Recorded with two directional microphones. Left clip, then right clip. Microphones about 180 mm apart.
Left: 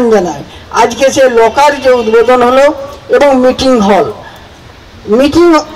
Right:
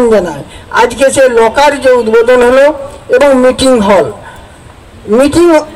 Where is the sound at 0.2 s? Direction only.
15° right (ahead or behind).